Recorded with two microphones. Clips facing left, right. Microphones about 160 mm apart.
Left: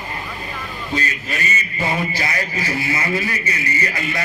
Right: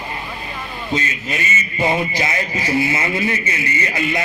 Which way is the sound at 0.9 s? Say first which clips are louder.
Right 2 dB; 20° right (ahead or behind).